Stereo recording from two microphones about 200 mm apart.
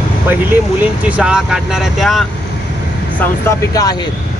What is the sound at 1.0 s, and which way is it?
Speech, 5° right (ahead or behind).